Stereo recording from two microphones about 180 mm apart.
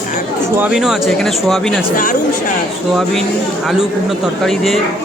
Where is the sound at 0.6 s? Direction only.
5° right (ahead or behind).